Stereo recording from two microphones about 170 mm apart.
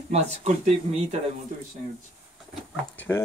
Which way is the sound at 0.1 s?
40° right (ahead or behind).